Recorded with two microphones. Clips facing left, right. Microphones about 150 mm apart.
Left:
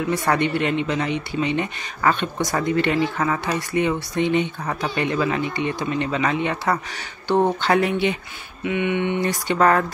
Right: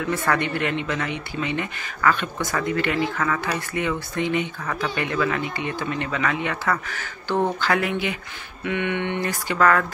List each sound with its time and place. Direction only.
0.0 s speech: 20° left (ahead or behind)